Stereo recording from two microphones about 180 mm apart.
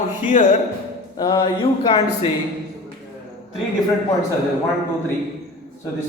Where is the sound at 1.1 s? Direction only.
25° left (ahead or behind).